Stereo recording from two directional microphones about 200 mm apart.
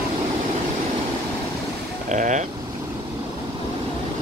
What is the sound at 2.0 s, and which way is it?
Speech, 40° right (ahead or behind).